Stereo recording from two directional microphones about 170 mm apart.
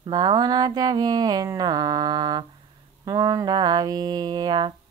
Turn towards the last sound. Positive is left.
turn(degrees=-25)  # may be behind; listen again after turning